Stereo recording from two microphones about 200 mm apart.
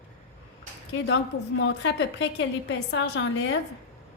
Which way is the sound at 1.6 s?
65° left (ahead or behind).